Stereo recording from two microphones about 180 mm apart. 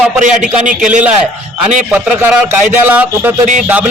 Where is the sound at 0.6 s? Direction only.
45° right (ahead or behind).